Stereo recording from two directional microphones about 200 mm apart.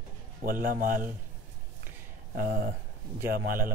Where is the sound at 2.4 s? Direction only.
50° right (ahead or behind).